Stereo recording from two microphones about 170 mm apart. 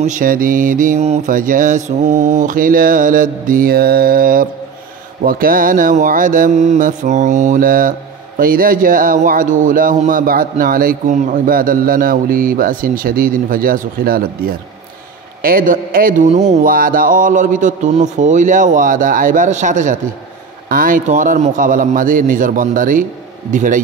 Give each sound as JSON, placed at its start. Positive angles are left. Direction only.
{"t": 0.0, "sound": "a man's voice", "side_deg": -55}